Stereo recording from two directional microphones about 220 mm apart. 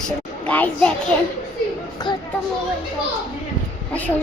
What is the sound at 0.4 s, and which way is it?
Speech, 5° left (ahead or behind).